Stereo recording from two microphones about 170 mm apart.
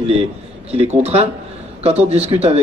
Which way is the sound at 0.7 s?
40° right (ahead or behind).